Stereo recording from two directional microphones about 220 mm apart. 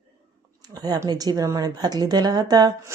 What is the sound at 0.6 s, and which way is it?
Speech, 15° right (ahead or behind).